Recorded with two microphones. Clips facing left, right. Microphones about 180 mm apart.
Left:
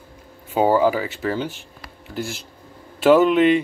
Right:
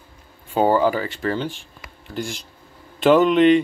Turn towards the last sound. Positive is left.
turn(degrees=5)  # may be behind; listen again after turning